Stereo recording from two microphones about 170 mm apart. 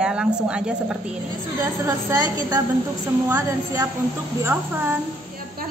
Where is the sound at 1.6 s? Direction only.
20° right (ahead or behind).